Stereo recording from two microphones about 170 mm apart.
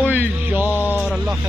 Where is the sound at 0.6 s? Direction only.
15° left (ahead or behind).